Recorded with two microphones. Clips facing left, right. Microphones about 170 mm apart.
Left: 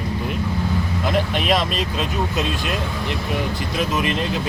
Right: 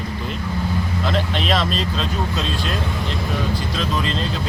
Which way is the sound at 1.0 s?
15° left (ahead or behind).